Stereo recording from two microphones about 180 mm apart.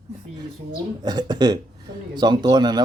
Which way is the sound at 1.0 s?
20° right (ahead or behind).